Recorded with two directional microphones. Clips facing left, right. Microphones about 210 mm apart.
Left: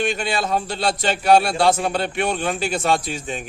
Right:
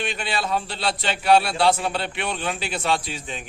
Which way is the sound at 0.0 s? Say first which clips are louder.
Left 5 dB; 45° left (ahead or behind).